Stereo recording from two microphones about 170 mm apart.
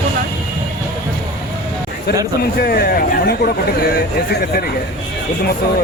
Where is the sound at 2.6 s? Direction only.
65° left (ahead or behind).